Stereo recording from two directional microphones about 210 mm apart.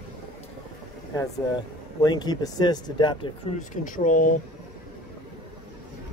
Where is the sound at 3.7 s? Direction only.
40° left (ahead or behind).